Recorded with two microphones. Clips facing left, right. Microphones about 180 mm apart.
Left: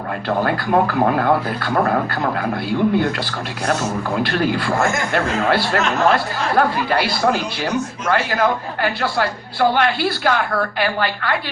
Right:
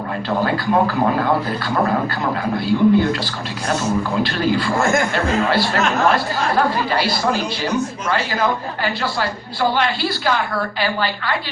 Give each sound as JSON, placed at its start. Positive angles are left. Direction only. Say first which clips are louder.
{"t": 0.3, "sound": "speech", "louder": "even", "side_deg": 55}